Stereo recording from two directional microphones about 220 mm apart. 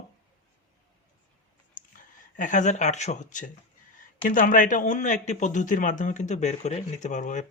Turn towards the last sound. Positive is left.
turn(degrees=35)  # may be behind; listen again after turning